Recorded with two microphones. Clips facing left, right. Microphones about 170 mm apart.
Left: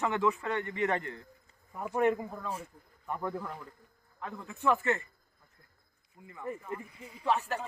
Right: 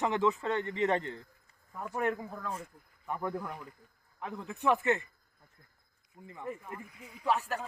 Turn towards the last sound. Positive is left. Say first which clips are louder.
# left 1 dB
turn(degrees=-5)  # may be behind; listen again after turning